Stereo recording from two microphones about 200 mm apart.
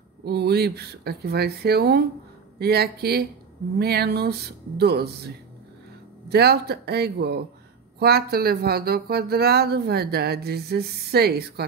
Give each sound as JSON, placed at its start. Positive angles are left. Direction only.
{"t": 0.2, "sound": "speech", "side_deg": -55}